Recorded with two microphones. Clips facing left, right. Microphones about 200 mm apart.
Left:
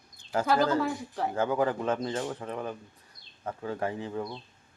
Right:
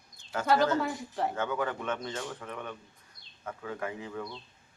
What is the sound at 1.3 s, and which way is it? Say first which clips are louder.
A man's voice: left 5 dB; 30° left (ahead or behind).